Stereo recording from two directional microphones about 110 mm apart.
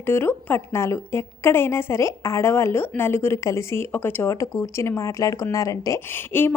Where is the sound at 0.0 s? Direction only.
20° left (ahead or behind).